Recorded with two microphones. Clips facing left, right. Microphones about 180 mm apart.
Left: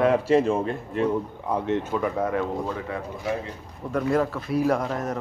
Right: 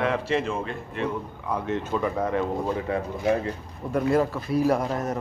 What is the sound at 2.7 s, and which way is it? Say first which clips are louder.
Speech: right 4 dB; 25° right (ahead or behind).